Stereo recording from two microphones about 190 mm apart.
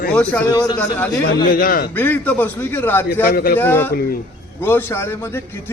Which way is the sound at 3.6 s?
10° left (ahead or behind).